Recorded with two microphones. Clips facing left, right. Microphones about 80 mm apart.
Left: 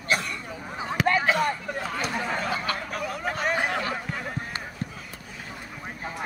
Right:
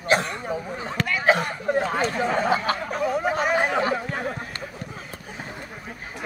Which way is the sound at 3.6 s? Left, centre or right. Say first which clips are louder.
Right 5 dB; right.